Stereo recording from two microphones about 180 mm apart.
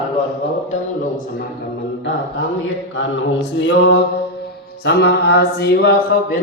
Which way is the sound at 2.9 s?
90° left.